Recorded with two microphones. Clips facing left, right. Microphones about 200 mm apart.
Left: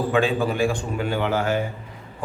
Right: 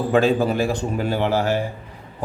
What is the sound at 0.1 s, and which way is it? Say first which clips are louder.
A man's voice: right 6 dB; 40° right (ahead or behind).